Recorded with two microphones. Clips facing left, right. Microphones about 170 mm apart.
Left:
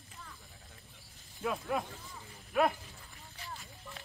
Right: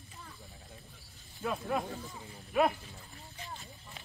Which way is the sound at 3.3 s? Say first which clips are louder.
Right 1 dB; 20° right (ahead or behind).